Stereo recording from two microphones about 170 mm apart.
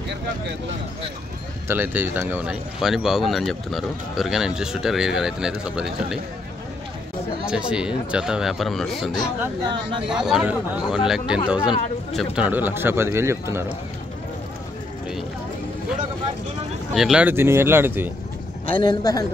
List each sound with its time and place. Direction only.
1.7 s speech: 10° right (ahead or behind)
7.4 s speech: 5° right (ahead or behind)
9.7 s speech: 30° right (ahead or behind)
10.0 s speech: 5° right (ahead or behind)
16.9 s speech: 5° right (ahead or behind)
18.7 s a man's voice: 25° left (ahead or behind)